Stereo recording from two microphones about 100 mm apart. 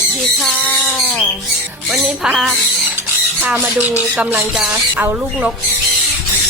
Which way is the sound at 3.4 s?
15° right (ahead or behind).